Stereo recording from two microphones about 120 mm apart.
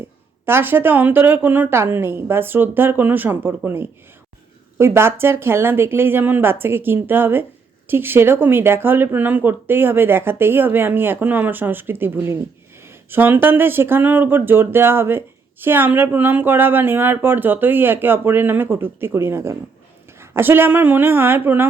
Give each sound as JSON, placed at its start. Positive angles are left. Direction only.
{"t": 0.4, "sound": "speech", "side_deg": -20}
{"t": 4.8, "sound": "speech", "side_deg": -20}